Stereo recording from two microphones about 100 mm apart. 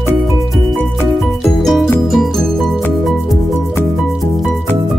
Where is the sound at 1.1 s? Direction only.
Centre (ahead or behind).